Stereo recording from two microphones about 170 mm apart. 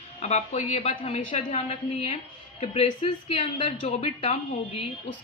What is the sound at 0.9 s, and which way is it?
Speech, 30° left (ahead or behind).